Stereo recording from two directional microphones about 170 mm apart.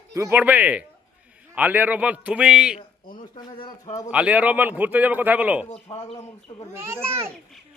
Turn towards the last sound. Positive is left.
turn(degrees=-15)  # may be behind; listen again after turning